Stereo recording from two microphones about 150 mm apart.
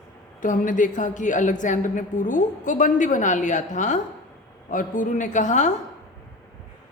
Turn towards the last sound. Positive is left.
turn(degrees=55)  # may be behind; listen again after turning